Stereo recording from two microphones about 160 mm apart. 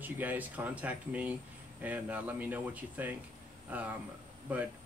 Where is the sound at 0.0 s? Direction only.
10° right (ahead or behind).